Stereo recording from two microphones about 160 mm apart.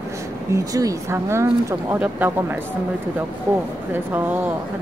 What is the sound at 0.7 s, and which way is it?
Speech, 20° right (ahead or behind).